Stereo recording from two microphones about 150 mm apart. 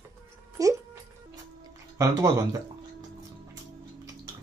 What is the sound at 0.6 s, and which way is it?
Speech, 25° right (ahead or behind).